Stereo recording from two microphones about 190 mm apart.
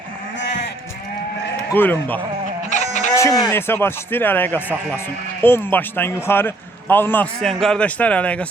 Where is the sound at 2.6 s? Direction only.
40° left (ahead or behind).